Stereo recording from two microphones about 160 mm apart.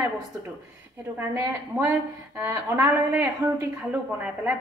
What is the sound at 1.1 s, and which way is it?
A woman's voice, 15° right (ahead or behind).